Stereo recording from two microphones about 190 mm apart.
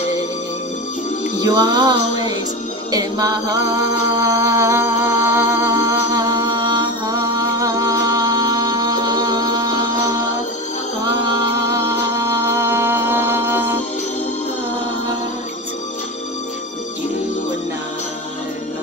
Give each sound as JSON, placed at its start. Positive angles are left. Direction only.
{"t": 1.4, "sound": "music", "side_deg": -20}
{"t": 2.9, "sound": "a sound", "side_deg": -20}
{"t": 11.6, "sound": "music", "side_deg": -15}